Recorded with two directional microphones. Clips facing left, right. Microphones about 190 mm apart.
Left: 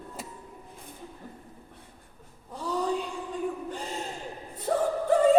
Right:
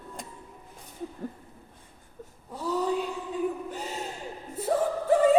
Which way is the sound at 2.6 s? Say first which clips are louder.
Right 1 dB; 10° right (ahead or behind).